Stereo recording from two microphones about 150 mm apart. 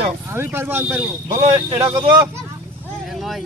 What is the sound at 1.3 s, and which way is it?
Speech, 30° right (ahead or behind).